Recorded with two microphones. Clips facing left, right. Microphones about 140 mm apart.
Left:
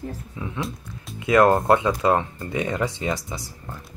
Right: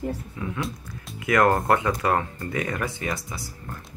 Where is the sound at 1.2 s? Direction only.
20° left (ahead or behind).